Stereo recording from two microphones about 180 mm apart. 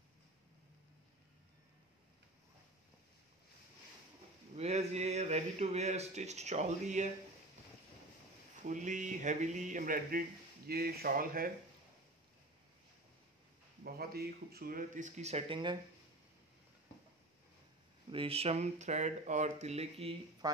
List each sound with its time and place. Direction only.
4.6 s speech: 35° right (ahead or behind)
8.6 s speech: 45° right (ahead or behind)
10.7 s speech: 60° right (ahead or behind)
13.8 s speech: 60° right (ahead or behind); by 15.8 s 25° right (ahead or behind)
18.1 s speech: 30° right (ahead or behind)